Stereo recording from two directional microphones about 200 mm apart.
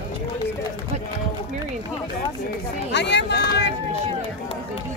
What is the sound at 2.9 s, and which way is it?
Speech, 60° left (ahead or behind).